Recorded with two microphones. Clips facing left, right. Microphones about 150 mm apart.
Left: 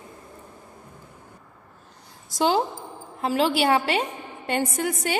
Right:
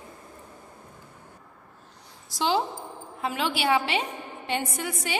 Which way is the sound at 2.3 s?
45° left (ahead or behind).